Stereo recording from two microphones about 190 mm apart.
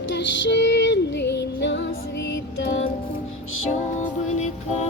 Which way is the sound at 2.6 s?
90° left.